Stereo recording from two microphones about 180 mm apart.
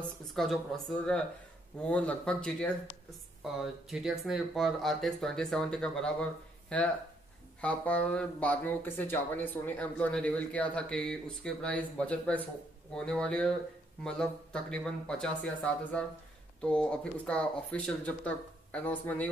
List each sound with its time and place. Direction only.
0.3 s speech: centre (ahead or behind)
7.6 s speech: 5° left (ahead or behind)